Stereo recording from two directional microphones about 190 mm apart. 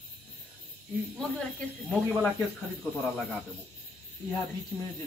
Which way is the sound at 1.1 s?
Centre (ahead or behind).